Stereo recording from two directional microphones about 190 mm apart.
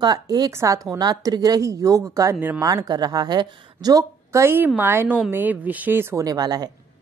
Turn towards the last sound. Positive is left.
turn(degrees=-20)  # may be behind; listen again after turning